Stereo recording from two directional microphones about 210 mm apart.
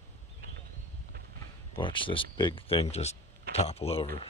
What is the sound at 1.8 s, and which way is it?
Speech, 25° left (ahead or behind).